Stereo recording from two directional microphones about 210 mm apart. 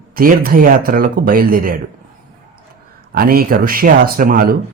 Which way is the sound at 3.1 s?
45° right (ahead or behind).